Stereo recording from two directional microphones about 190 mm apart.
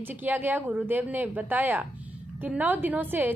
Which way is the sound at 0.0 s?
10° right (ahead or behind).